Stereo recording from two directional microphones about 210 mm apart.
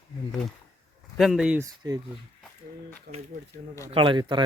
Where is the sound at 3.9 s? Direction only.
25° right (ahead or behind).